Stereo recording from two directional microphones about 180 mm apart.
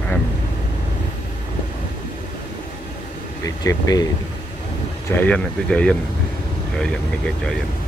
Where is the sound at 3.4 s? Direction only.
20° left (ahead or behind).